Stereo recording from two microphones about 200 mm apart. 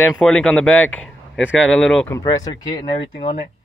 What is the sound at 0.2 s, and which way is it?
Speech, 5° left (ahead or behind).